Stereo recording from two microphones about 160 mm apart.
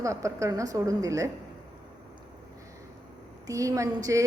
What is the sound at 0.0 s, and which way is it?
A man's voice, 20° right (ahead or behind).